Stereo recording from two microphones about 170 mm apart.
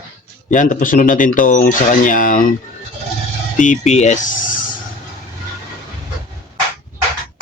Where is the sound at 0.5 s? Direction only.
50° left (ahead or behind).